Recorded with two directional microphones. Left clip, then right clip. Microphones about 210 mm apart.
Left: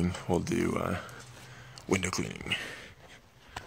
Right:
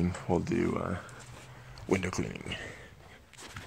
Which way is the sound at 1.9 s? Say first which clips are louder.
Left 1 dB; 5° right (ahead or behind).